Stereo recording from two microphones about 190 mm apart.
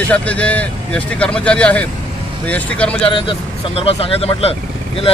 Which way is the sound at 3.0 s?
30° left (ahead or behind).